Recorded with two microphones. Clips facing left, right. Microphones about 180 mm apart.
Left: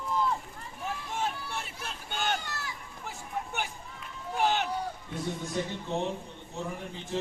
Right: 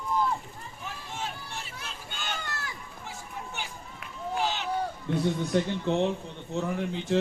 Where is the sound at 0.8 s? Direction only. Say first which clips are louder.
Left 4 dB; 50° left (ahead or behind).